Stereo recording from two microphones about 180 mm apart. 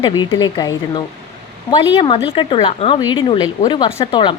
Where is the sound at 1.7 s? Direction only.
30° left (ahead or behind).